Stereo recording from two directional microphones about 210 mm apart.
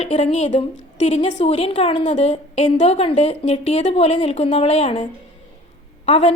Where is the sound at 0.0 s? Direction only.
30° left (ahead or behind).